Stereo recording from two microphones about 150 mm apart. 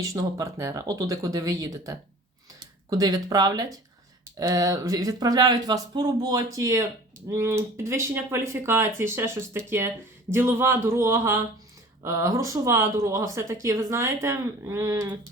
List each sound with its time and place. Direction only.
0.0 s speech: 25° right (ahead or behind)